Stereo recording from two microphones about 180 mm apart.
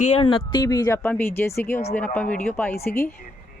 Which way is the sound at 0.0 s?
35° left (ahead or behind).